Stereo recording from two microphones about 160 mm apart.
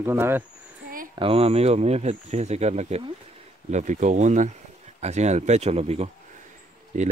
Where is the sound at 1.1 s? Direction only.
35° right (ahead or behind).